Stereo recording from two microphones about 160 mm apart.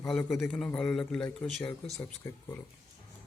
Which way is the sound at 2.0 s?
20° left (ahead or behind).